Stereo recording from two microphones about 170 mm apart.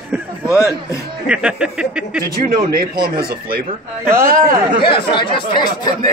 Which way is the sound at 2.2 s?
60° right (ahead or behind).